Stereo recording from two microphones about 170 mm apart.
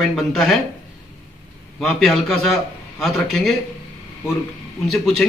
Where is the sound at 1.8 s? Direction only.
Centre (ahead or behind).